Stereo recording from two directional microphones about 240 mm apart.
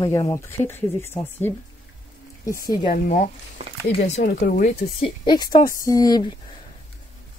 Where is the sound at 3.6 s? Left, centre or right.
Right.